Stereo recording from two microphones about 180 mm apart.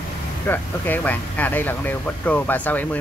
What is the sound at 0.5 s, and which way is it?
Speech, 10° left (ahead or behind).